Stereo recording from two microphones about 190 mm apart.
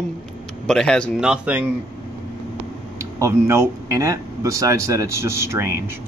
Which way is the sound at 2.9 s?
15° right (ahead or behind).